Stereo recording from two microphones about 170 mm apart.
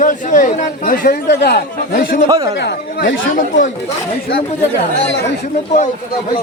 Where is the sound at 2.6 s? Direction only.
90° left.